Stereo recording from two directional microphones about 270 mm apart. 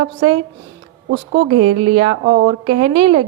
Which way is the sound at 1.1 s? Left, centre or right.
Right.